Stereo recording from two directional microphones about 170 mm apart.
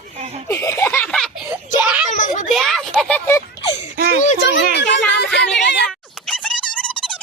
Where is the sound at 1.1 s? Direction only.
Centre (ahead or behind).